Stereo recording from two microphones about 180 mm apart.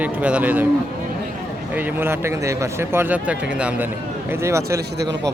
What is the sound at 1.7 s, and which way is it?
Speech, 10° right (ahead or behind).